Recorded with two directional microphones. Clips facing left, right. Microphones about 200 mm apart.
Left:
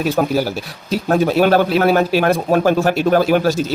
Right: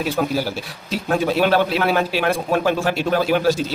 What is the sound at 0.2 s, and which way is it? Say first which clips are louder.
Speech: left 4 dB; 50° left (ahead or behind).